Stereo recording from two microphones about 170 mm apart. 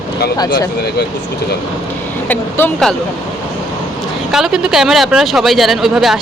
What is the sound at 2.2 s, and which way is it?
Speech, 10° left (ahead or behind).